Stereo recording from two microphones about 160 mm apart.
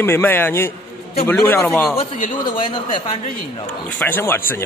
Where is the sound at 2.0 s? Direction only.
30° left (ahead or behind).